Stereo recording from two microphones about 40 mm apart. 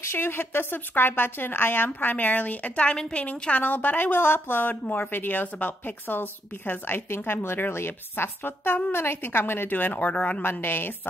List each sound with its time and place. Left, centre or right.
0.1 s a woman's voice: left
2.0 s a woman's voice: left
4.6 s a woman's voice: left
7.1 s a woman's voice: left
8.9 s a woman's voice: left
10.4 s a woman's voice: left